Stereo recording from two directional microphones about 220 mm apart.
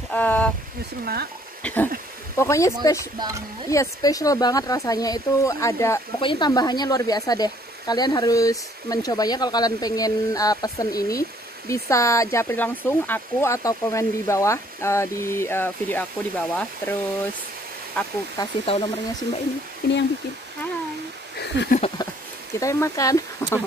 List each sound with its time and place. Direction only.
0.1 s speech: 5° left (ahead or behind)
1.0 s speech: 45° right (ahead or behind)
1.6 s a sound: 10° left (ahead or behind)
2.3 s speech: 15° left (ahead or behind)
3.2 s speech: 15° right (ahead or behind)
3.7 s speech: 15° left (ahead or behind)
18.4 s speech: 25° left (ahead or behind)
19.8 s speech: 45° left (ahead or behind)
21.4 s a sound: 50° left (ahead or behind)
22.6 s speech: 15° left (ahead or behind)